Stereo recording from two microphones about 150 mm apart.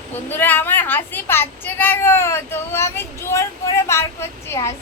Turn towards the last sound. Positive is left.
turn(degrees=20)  # may be behind; listen again after turning